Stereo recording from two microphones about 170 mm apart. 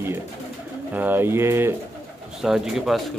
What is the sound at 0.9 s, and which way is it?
Speech, 10° right (ahead or behind).